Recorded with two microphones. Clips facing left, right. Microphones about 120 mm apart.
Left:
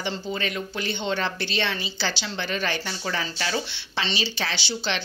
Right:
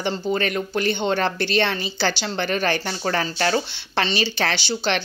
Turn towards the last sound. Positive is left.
turn(degrees=-55)  # may be behind; listen again after turning